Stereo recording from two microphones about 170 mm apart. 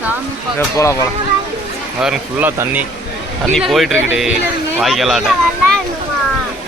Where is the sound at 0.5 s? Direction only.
15° left (ahead or behind).